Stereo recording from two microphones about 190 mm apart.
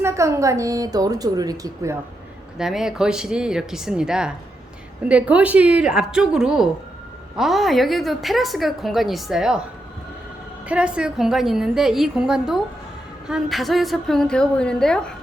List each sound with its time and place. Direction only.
0.0 s a woman's voice: 15° right (ahead or behind)
2.6 s a woman's voice: centre (ahead or behind)
10.7 s a woman's voice: 5° right (ahead or behind)